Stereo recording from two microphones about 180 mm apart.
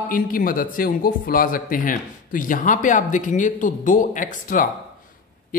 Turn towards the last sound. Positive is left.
turn(degrees=50)  # may be behind; listen again after turning